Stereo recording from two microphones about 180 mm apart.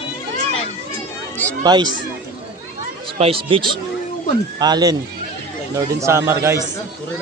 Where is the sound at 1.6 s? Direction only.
25° right (ahead or behind).